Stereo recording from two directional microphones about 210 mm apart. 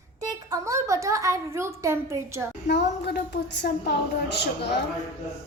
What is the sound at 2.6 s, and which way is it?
A woman's voice, 55° left (ahead or behind).